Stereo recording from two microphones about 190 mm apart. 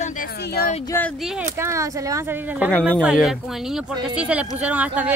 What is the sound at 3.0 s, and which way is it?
Speech, 5° right (ahead or behind).